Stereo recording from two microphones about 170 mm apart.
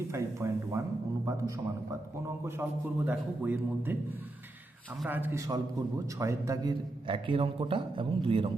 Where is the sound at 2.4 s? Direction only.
10° right (ahead or behind).